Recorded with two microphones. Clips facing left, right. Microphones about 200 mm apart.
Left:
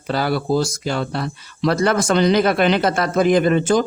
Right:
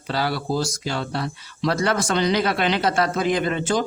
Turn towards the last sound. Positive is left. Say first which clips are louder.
# left 7 dB
turn(degrees=50)  # may be behind; listen again after turning